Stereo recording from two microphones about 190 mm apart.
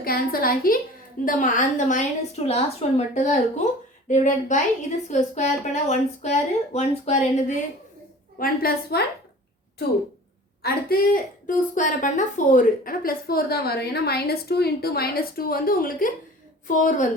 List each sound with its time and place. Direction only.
0.0 s a woman's voice: 50° left (ahead or behind)
8.4 s a woman's voice: 55° left (ahead or behind)
10.6 s a woman's voice: 50° left (ahead or behind)